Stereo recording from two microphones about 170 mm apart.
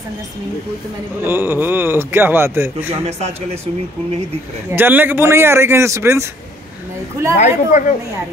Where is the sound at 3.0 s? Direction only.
40° right (ahead or behind).